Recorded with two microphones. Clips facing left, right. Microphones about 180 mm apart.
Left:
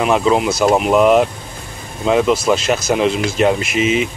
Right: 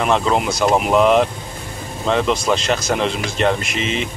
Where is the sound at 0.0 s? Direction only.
5° left (ahead or behind).